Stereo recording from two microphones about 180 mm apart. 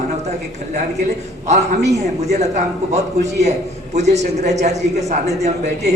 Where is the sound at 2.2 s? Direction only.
40° right (ahead or behind).